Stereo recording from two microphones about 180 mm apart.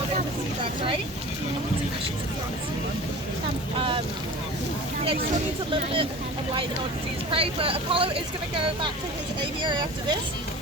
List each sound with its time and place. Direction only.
3.8 s speech: 30° right (ahead or behind)
5.7 s speech: 30° right (ahead or behind)
7.3 s speech: 30° right (ahead or behind)
9.6 s speech: 25° right (ahead or behind)